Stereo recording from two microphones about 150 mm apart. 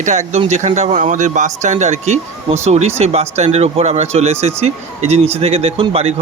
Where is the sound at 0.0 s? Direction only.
50° right (ahead or behind).